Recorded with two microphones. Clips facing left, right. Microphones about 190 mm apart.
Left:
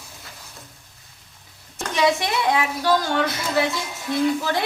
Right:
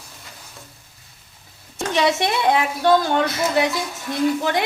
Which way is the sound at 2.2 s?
25° right (ahead or behind).